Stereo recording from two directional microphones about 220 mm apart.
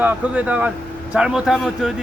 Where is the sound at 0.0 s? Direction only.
5° right (ahead or behind).